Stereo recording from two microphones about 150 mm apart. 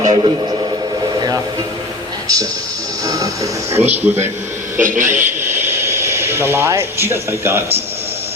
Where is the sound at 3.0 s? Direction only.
20° right (ahead or behind).